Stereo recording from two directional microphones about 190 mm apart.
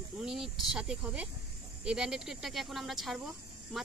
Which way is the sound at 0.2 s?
5° right (ahead or behind).